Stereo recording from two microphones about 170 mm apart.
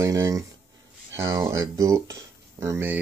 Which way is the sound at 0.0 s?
20° right (ahead or behind).